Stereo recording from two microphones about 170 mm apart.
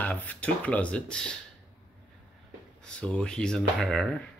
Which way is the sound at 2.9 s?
5° left (ahead or behind).